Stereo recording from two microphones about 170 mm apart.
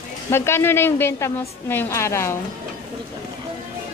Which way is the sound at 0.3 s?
15° left (ahead or behind).